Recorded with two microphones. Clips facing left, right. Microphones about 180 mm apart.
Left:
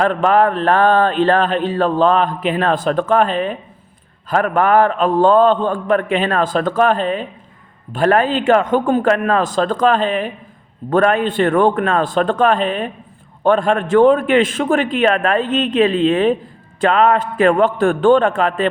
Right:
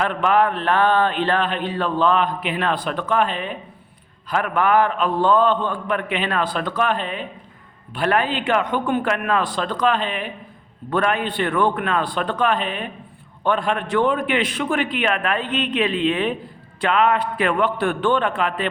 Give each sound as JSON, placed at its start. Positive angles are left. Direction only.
{"t": 0.0, "sound": "speech", "side_deg": 40}